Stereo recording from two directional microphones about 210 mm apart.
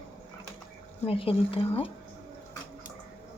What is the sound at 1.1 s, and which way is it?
Speech, 25° left (ahead or behind).